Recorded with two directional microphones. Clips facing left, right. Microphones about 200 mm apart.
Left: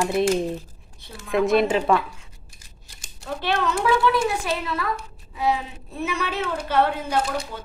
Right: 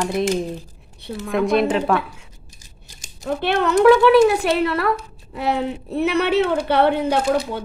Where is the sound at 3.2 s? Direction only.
55° right (ahead or behind).